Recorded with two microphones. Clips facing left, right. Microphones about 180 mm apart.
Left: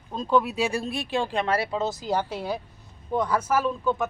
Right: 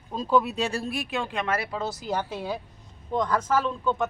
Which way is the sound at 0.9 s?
30° left (ahead or behind).